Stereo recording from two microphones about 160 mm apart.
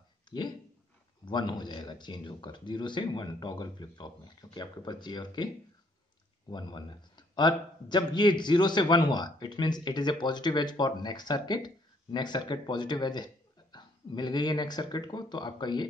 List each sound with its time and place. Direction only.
1.2 s a man's voice: 30° left (ahead or behind)
6.5 s a man's voice: 30° left (ahead or behind)